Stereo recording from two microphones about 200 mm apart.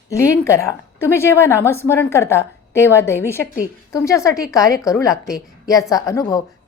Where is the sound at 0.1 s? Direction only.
15° left (ahead or behind).